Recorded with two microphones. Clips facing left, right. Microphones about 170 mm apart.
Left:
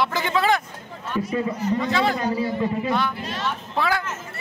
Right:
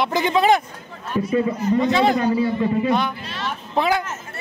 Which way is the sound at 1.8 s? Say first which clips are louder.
Right 6 dB; 20° right (ahead or behind).